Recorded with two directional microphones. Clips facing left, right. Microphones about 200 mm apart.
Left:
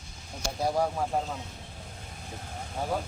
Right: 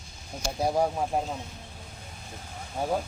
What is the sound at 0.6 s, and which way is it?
Speech, 20° right (ahead or behind).